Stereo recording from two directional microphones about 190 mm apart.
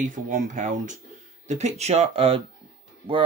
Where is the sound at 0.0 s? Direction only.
40° right (ahead or behind).